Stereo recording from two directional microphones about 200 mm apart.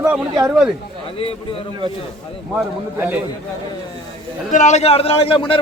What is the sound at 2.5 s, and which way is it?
Speech, 10° right (ahead or behind).